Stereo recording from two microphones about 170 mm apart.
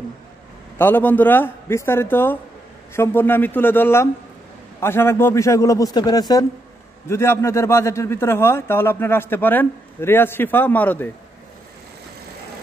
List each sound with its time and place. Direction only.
0.7 s a man's voice: 10° left (ahead or behind)